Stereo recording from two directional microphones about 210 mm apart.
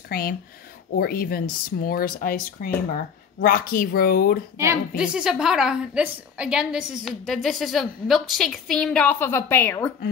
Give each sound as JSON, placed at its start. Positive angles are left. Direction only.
{"t": 0.1, "sound": "speech", "side_deg": 45}
{"t": 4.6, "sound": "a woman's voice", "side_deg": -10}